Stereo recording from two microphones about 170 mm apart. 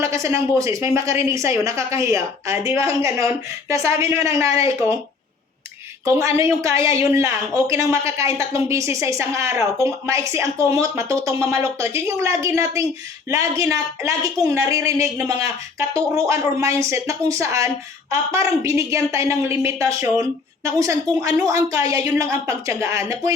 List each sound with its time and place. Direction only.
0.0 s a woman's voice: 15° right (ahead or behind)
6.1 s a woman's voice: 15° right (ahead or behind)